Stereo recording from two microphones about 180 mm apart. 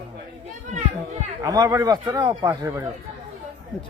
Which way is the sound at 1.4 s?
20° right (ahead or behind).